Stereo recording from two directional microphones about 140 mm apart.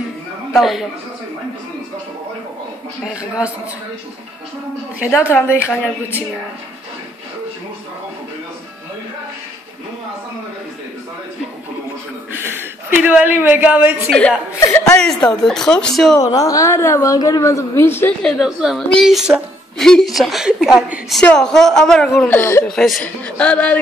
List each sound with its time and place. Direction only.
0.6 s a woman's voice: centre (ahead or behind)
3.0 s a woman's voice: 5° right (ahead or behind)
5.3 s a man's voice: 15° left (ahead or behind)
13.0 s a woman's voice: 10° right (ahead or behind)
14.6 s a woman's voice: 20° left (ahead or behind)
15.0 s a woman's voice: 5° left (ahead or behind)
16.2 s a woman's voice: 25° left (ahead or behind)
18.2 s a woman's voice: 5° right (ahead or behind)
22.3 s a man's voice: 15° left (ahead or behind)
22.7 s a man's voice: centre (ahead or behind)